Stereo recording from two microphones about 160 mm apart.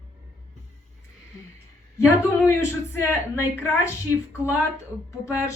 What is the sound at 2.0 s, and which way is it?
A woman's voice, 15° left (ahead or behind).